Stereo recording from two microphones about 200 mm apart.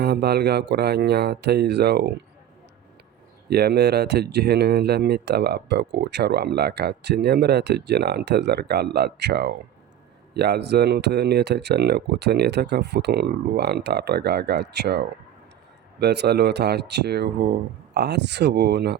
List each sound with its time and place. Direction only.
0.0 s speech: 55° right (ahead or behind)
3.5 s speech: 55° right (ahead or behind)